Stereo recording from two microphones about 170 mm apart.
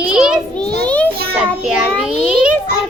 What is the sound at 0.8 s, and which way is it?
Speech, 10° left (ahead or behind).